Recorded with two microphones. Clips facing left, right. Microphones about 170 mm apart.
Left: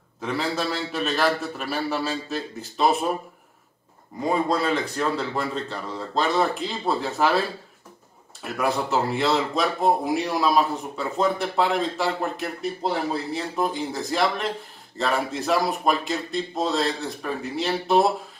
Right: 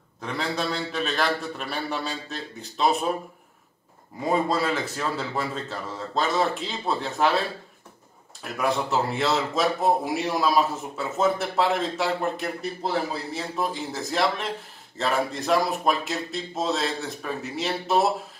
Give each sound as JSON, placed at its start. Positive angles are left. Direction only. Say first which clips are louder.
{"t": 0.2, "sound": "speech", "louder": "left 2 dB", "side_deg": 5}
{"t": 4.2, "sound": "speech", "louder": "left 1 dB", "side_deg": 0}